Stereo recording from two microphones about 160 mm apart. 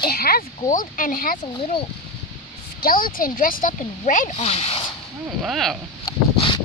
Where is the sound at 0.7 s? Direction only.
60° left (ahead or behind).